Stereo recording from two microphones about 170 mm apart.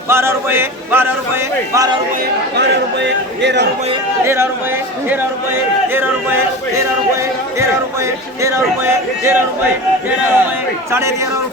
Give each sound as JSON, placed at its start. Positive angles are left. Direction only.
{"t": 0.1, "sound": "speech", "side_deg": -15}
{"t": 2.6, "sound": "a man's voice", "side_deg": -90}
{"t": 5.9, "sound": "speech", "side_deg": -15}
{"t": 8.4, "sound": "speech", "side_deg": -15}